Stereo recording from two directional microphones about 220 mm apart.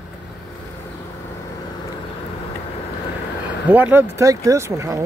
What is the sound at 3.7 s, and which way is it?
Speech, 10° right (ahead or behind).